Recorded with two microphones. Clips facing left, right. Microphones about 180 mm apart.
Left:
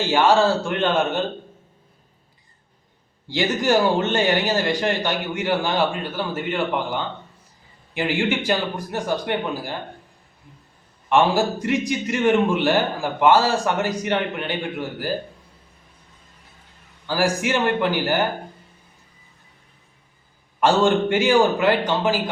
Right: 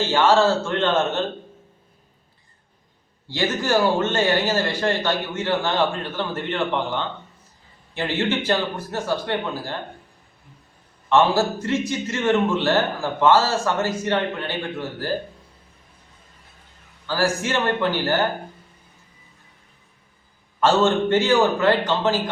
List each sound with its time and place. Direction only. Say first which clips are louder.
0.0 s a man's voice: even; 15° left (ahead or behind)
3.2 s a man's voice: left 2 dB; 15° left (ahead or behind)
11.1 s a man's voice: even; 15° left (ahead or behind)
17.1 s a man's voice: left 1 dB; 15° left (ahead or behind)
20.6 s a man's voice: left 1 dB; 15° left (ahead or behind)